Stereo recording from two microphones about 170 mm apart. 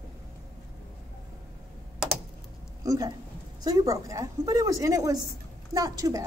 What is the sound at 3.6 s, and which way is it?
A woman's voice, 20° right (ahead or behind).